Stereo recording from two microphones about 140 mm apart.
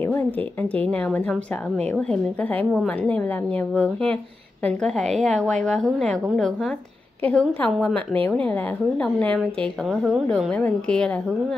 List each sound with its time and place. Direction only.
0.0 s a woman's voice: 15° left (ahead or behind)